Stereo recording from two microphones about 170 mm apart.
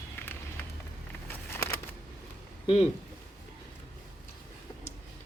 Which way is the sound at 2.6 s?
40° left (ahead or behind).